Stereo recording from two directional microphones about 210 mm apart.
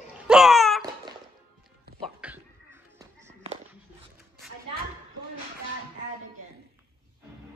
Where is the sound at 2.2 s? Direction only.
10° right (ahead or behind).